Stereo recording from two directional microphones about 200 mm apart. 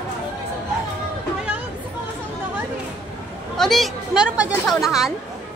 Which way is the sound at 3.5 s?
Centre (ahead or behind).